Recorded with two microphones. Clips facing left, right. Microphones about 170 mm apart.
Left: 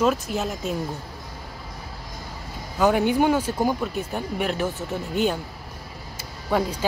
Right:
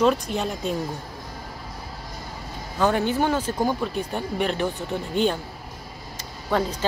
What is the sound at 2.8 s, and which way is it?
Speech, 10° left (ahead or behind).